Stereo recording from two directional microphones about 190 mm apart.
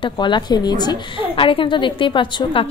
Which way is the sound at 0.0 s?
25° left (ahead or behind).